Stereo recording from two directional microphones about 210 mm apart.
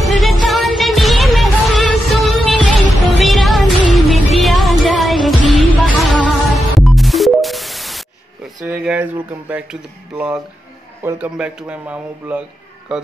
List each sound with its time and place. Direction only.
0.2 s music: centre (ahead or behind)
8.8 s a man's voice: 5° right (ahead or behind)